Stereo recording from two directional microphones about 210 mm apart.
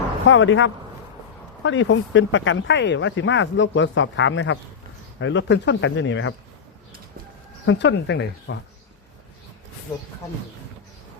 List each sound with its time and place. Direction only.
0.3 s speech: 65° left (ahead or behind)
7.6 s speech: 60° left (ahead or behind)